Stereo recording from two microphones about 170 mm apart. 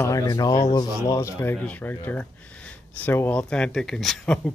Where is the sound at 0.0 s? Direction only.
20° left (ahead or behind).